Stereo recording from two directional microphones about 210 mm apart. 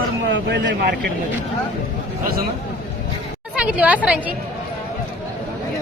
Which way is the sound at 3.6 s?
5° right (ahead or behind).